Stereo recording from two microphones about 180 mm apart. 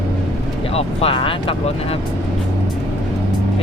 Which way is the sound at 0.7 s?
30° left (ahead or behind).